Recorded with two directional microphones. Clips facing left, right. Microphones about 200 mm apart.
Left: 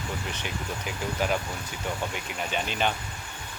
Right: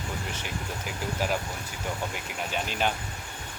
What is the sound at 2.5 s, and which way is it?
Speech, 5° right (ahead or behind).